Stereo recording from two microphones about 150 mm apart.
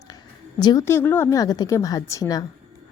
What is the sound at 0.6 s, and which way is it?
Speech, 25° left (ahead or behind).